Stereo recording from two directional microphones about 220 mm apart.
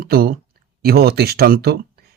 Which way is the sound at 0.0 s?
45° right (ahead or behind).